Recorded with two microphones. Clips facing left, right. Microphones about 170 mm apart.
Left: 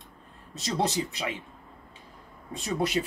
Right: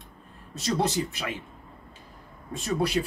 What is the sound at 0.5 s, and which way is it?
Speech, 20° left (ahead or behind).